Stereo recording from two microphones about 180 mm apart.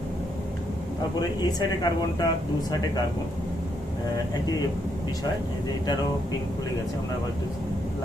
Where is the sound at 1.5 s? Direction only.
20° left (ahead or behind).